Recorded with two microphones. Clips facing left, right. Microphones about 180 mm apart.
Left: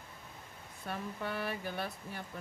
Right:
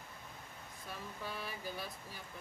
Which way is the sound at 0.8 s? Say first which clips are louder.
Left 7 dB; 60° left (ahead or behind).